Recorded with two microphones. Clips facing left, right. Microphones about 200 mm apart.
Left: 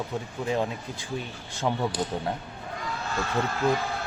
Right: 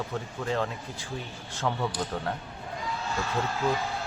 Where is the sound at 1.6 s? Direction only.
15° left (ahead or behind).